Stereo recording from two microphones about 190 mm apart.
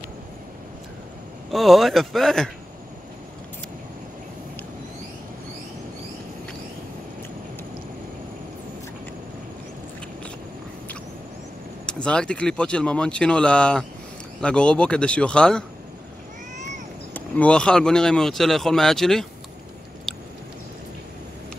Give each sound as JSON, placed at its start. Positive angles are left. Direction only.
{"t": 1.5, "sound": "speech", "side_deg": 0}
{"t": 11.8, "sound": "speech", "side_deg": 5}
{"t": 17.1, "sound": "speech", "side_deg": 5}
{"t": 20.1, "sound": "a sound", "side_deg": 0}